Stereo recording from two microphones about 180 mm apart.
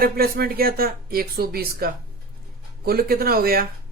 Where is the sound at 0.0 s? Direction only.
55° right (ahead or behind).